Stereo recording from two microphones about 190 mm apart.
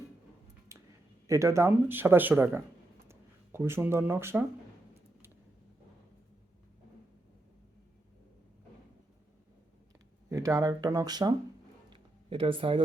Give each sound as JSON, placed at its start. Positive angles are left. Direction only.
{"t": 0.7, "sound": "a sound", "side_deg": -15}
{"t": 1.3, "sound": "speech", "side_deg": -15}
{"t": 10.2, "sound": "speech", "side_deg": -15}
{"t": 11.9, "sound": "music", "side_deg": -25}